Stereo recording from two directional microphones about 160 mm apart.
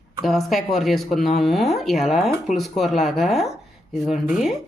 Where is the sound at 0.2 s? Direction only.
Centre (ahead or behind).